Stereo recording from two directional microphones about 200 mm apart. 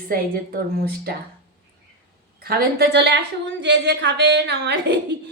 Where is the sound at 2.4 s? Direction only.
55° right (ahead or behind).